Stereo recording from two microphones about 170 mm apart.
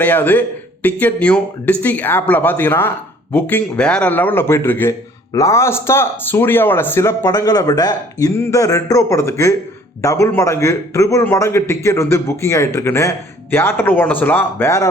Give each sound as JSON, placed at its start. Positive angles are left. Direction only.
{"t": 0.0, "sound": "a man's voice", "side_deg": 10}